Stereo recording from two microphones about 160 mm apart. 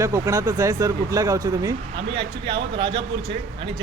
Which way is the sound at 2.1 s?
35° right (ahead or behind).